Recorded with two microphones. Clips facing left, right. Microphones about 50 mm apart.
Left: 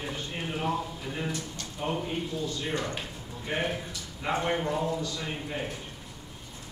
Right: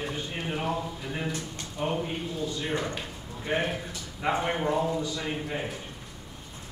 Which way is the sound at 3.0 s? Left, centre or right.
Centre.